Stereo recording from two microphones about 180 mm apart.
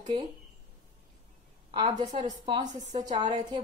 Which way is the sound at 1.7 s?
25° right (ahead or behind).